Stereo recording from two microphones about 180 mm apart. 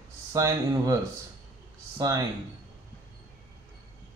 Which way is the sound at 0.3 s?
20° right (ahead or behind).